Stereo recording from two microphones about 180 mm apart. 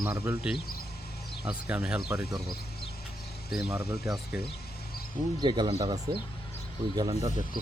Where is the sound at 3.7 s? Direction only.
15° right (ahead or behind).